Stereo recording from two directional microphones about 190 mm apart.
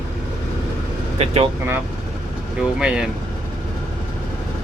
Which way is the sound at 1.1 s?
35° right (ahead or behind).